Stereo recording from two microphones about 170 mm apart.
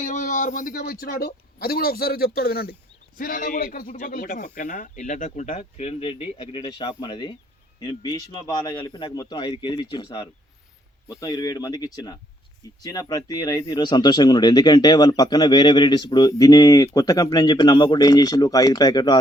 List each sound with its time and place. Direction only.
0.0 s a man's voice: 50° left (ahead or behind); by 19.1 s 25° left (ahead or behind)